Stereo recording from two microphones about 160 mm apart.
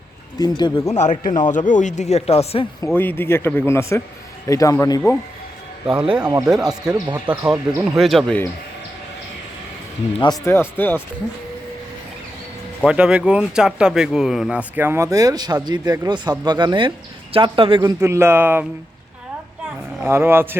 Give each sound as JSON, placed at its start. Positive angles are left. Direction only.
{"t": 0.3, "sound": "speech", "side_deg": 25}
{"t": 0.9, "sound": "speech", "side_deg": 45}
{"t": 2.8, "sound": "speech", "side_deg": 10}
{"t": 5.9, "sound": "speech", "side_deg": -5}
{"t": 6.2, "sound": "speech", "side_deg": -20}
{"t": 10.8, "sound": "speech", "side_deg": 10}
{"t": 12.8, "sound": "a man's voice", "side_deg": -5}
{"t": 17.7, "sound": "speech", "side_deg": -15}
{"t": 20.0, "sound": "speech", "side_deg": -15}